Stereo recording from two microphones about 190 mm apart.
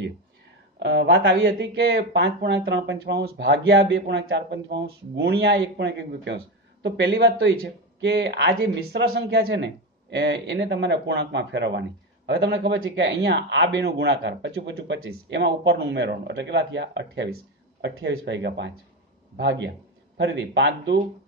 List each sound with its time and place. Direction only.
0.7 s speech: 65° right (ahead or behind)
1.6 s speech: 60° right (ahead or behind)